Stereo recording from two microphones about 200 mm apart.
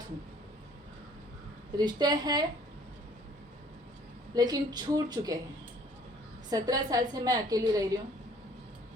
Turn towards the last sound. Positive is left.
turn(degrees=-15)  # may be behind; listen again after turning